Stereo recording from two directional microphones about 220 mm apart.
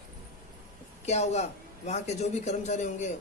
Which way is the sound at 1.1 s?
30° left (ahead or behind).